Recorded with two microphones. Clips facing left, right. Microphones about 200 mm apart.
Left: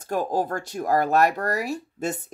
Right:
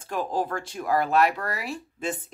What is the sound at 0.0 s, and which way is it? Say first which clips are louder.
Speech: left 3 dB; 40° left (ahead or behind).